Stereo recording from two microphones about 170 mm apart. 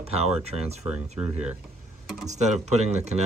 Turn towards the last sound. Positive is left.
turn(degrees=-40)  # may be behind; listen again after turning